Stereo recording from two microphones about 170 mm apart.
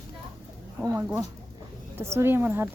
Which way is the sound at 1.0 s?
10° right (ahead or behind).